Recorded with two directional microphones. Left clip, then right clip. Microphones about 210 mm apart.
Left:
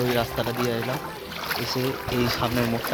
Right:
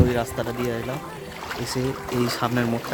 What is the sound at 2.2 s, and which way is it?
Speech, 20° right (ahead or behind).